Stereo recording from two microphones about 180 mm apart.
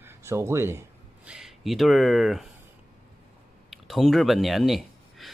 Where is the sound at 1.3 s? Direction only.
Centre (ahead or behind).